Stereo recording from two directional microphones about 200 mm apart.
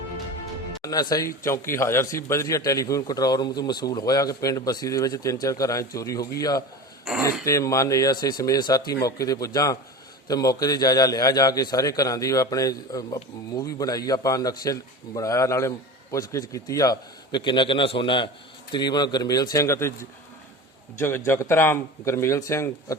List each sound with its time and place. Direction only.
0.8 s a man's voice: 20° left (ahead or behind)
7.2 s speech: 10° right (ahead or behind)
7.4 s a man's voice: 15° left (ahead or behind)